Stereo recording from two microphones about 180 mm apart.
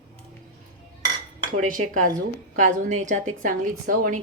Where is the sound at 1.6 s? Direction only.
45° right (ahead or behind).